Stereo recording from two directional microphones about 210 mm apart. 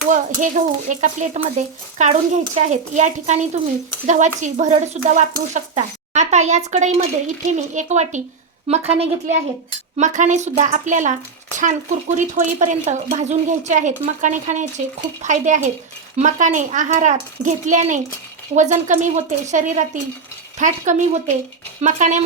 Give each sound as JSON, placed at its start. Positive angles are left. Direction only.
{"t": 0.1, "sound": "a woman's voice", "side_deg": -35}